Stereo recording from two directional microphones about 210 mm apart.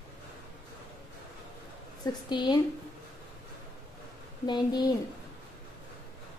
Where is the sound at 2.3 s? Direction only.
20° left (ahead or behind).